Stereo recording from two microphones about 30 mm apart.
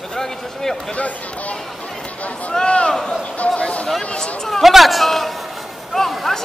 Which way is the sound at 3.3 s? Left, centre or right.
Left.